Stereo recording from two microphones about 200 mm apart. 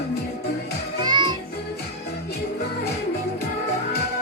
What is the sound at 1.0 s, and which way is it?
Music, 20° right (ahead or behind).